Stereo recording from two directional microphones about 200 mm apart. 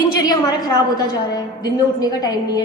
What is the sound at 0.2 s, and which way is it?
A woman's voice, 20° left (ahead or behind).